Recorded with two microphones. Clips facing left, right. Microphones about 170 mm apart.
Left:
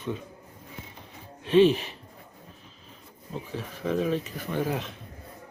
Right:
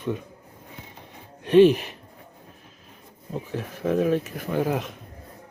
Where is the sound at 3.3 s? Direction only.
55° right (ahead or behind).